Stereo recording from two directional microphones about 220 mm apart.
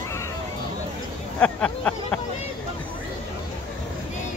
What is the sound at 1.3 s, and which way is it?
Speech, 5° left (ahead or behind).